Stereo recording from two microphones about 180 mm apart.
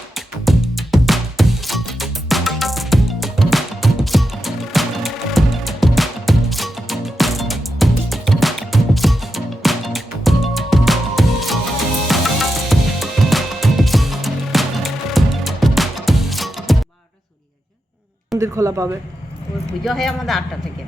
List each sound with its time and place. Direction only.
0.4 s music: centre (ahead or behind)
18.3 s a sound: 15° right (ahead or behind)
19.8 s speech: centre (ahead or behind)